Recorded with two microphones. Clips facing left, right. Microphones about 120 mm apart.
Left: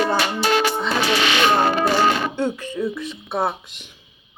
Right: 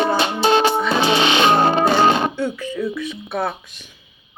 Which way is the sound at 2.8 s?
25° left (ahead or behind).